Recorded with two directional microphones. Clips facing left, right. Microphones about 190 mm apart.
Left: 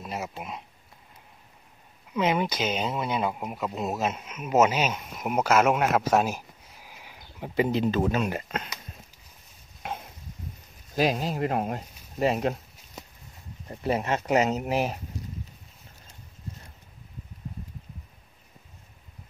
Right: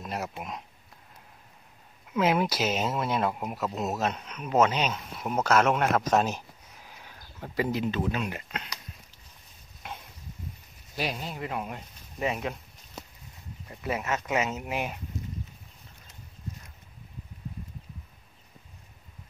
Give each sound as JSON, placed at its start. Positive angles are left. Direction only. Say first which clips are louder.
{"t": 0.0, "sound": "a sound", "louder": "even", "side_deg": 0}
{"t": 0.4, "sound": "speech", "louder": "even", "side_deg": 0}
{"t": 2.1, "sound": "speech", "louder": "even", "side_deg": -5}
{"t": 7.8, "sound": "speech", "louder": "left 4 dB", "side_deg": 40}
{"t": 11.1, "sound": "speech", "louder": "left 7 dB", "side_deg": 40}
{"t": 13.7, "sound": "speech", "louder": "left 4 dB", "side_deg": 30}